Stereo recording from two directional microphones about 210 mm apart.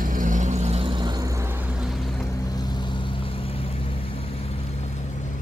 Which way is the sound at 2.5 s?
20° left (ahead or behind).